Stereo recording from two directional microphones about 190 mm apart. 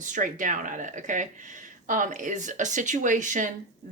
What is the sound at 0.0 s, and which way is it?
Speech, 45° right (ahead or behind).